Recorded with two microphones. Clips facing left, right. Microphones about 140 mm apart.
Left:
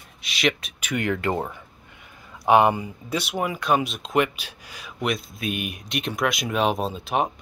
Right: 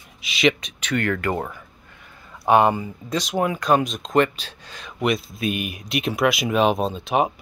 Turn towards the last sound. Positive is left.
turn(degrees=0)  # may be behind; listen again after turning